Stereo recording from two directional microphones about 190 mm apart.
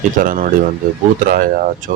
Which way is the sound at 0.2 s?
45° right (ahead or behind).